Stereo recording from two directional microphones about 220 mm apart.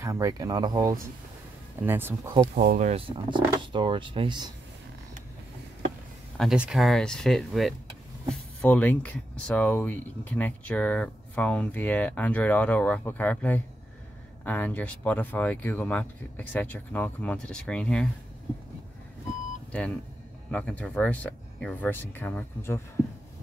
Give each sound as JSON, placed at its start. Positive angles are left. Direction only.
{"t": 0.0, "sound": "speech", "side_deg": -15}
{"t": 2.5, "sound": "speech", "side_deg": -40}
{"t": 6.3, "sound": "speech", "side_deg": 0}
{"t": 20.5, "sound": "speech", "side_deg": 5}